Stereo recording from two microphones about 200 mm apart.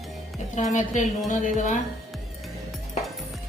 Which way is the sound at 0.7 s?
35° left (ahead or behind).